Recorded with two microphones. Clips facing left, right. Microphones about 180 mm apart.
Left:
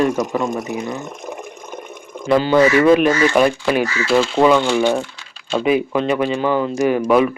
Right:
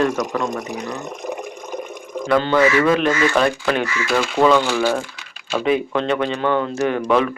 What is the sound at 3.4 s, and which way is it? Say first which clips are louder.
Speech: left 4 dB; 10° left (ahead or behind).